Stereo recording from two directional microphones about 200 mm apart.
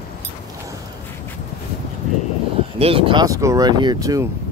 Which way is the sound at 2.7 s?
30° right (ahead or behind).